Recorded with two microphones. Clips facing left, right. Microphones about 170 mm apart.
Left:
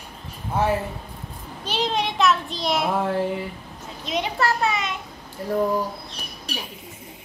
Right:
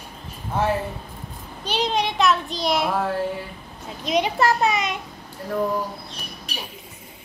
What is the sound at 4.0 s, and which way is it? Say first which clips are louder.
Speech: right 4 dB; 15° right (ahead or behind).